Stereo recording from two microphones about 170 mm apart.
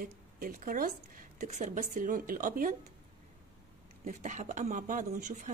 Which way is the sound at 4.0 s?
50° right (ahead or behind).